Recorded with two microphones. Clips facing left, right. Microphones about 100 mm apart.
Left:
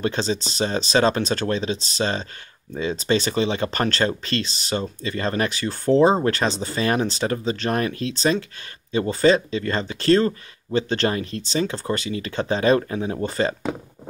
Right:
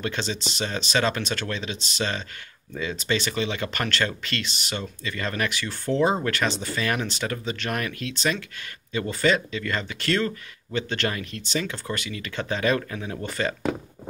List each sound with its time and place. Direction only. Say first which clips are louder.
0.0 s speech: left 5 dB; 35° left (ahead or behind)